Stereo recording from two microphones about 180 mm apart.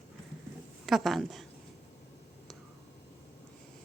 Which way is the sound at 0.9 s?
Centre (ahead or behind).